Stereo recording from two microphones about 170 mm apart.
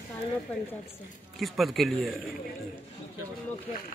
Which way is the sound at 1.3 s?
Centre (ahead or behind).